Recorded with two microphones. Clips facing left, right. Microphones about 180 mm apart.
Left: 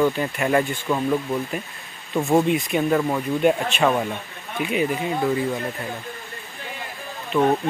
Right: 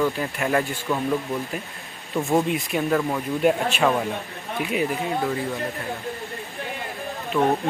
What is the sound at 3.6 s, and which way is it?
Speech, 5° right (ahead or behind).